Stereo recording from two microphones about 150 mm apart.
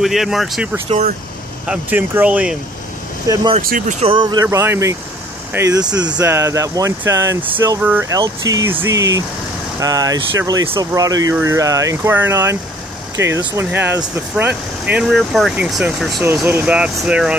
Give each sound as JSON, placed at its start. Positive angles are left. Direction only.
{"t": 0.0, "sound": "speech", "side_deg": 0}
{"t": 0.8, "sound": "speech", "side_deg": -50}
{"t": 1.7, "sound": "speech", "side_deg": -10}
{"t": 3.3, "sound": "speech", "side_deg": -20}
{"t": 3.6, "sound": "speech", "side_deg": -70}
{"t": 4.0, "sound": "speech", "side_deg": -30}